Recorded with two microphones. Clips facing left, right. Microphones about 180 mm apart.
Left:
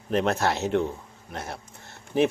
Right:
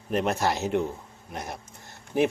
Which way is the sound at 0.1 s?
10° right (ahead or behind).